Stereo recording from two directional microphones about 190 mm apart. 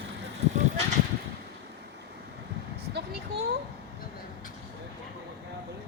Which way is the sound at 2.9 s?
60° right (ahead or behind).